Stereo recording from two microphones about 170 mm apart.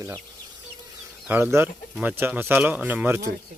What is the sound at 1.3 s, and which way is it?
Speech, 15° right (ahead or behind).